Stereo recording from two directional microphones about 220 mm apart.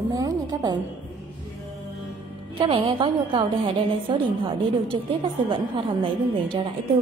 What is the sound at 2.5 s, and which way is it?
A woman's voice, 25° right (ahead or behind).